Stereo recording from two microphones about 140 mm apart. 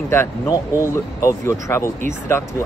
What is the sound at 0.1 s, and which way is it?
Speech, 20° left (ahead or behind).